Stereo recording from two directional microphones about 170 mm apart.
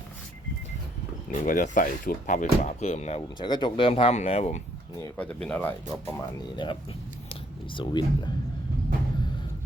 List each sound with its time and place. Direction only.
1.3 s speech: 50° left (ahead or behind)
3.4 s speech: 25° left (ahead or behind)
5.1 s speech: 10° left (ahead or behind)
6.6 s speech: 30° left (ahead or behind)